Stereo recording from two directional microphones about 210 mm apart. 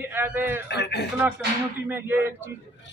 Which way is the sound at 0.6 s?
55° left (ahead or behind).